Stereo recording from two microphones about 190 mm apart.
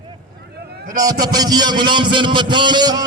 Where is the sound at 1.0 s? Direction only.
20° right (ahead or behind).